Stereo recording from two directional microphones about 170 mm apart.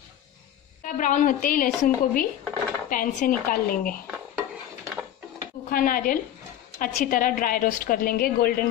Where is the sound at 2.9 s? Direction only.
55° left (ahead or behind).